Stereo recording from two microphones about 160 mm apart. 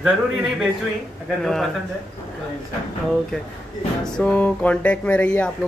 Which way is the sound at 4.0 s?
10° left (ahead or behind).